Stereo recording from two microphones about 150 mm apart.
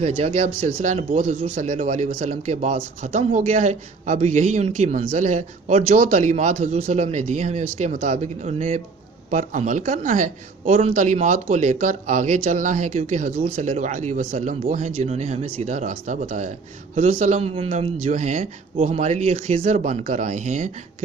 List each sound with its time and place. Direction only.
0.0 s speech: 50° right (ahead or behind)
10.8 s speech: 50° right (ahead or behind)
17.4 s speech: 40° right (ahead or behind)